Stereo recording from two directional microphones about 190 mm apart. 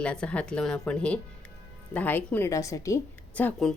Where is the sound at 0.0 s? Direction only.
5° left (ahead or behind).